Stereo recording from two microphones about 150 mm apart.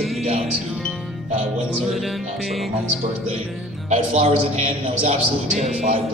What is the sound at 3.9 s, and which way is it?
A man's voice, 50° right (ahead or behind).